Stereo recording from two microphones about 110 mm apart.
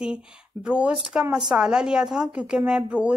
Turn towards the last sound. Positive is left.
turn(degrees=-10)  # may be behind; listen again after turning